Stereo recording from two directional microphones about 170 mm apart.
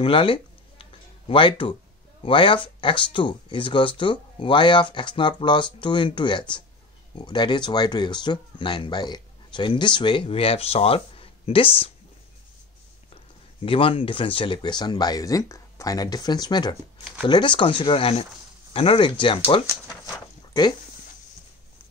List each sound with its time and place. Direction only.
0.0 s a sound: 30° left (ahead or behind)
2.2 s speech: 30° left (ahead or behind)
13.6 s speech: 35° left (ahead or behind)